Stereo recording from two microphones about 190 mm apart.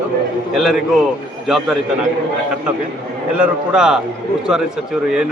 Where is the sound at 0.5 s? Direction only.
Centre (ahead or behind).